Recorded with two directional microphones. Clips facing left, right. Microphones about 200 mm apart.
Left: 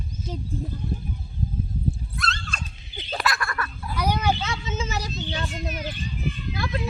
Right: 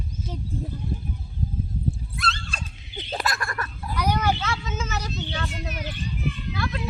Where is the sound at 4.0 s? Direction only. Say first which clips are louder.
Even; 15° left (ahead or behind); by 5.1 s 30° left (ahead or behind).